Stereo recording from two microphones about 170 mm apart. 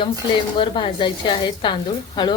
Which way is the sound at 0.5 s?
30° left (ahead or behind).